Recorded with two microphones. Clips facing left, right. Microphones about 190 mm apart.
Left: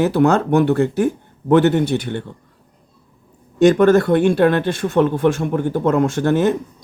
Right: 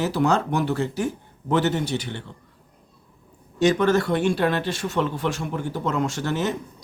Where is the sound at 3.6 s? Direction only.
55° left (ahead or behind).